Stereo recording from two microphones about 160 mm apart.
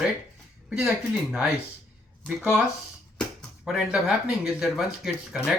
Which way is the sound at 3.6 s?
5° right (ahead or behind).